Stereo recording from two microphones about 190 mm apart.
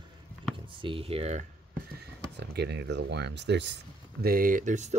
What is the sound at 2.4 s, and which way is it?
Speech, 60° right (ahead or behind).